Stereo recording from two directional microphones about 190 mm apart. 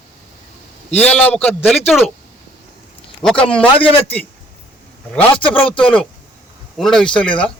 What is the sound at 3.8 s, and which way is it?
Speech, 30° left (ahead or behind).